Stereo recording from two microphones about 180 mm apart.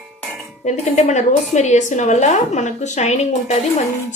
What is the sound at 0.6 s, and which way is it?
A woman's voice, 40° left (ahead or behind).